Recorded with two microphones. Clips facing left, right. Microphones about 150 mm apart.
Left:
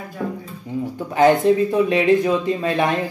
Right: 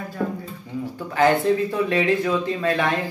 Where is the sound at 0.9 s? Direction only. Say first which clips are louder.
Left 4 dB; 20° left (ahead or behind).